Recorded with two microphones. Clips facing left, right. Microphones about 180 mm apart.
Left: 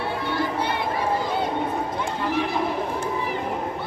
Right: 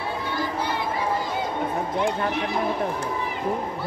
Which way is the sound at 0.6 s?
60° left (ahead or behind).